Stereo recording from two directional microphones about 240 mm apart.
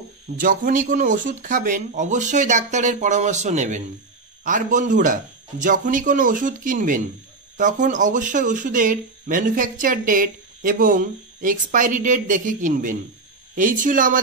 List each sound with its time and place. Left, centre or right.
0.4 s speech: right